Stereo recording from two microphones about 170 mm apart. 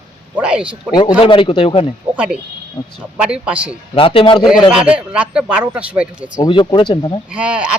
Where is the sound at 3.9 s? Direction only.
30° left (ahead or behind).